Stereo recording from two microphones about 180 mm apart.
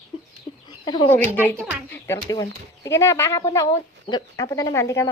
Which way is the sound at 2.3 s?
20° left (ahead or behind).